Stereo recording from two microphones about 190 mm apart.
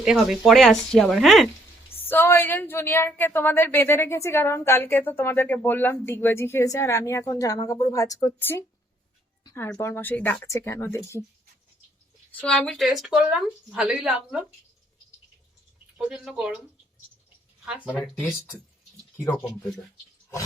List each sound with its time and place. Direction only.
0.0 s speech: centre (ahead or behind)
2.0 s a woman's voice: 10° left (ahead or behind)
9.4 s a sound: 15° left (ahead or behind)
9.7 s a woman's voice: 15° left (ahead or behind)
12.4 s speech: 5° left (ahead or behind)
16.0 s speech: 5° right (ahead or behind)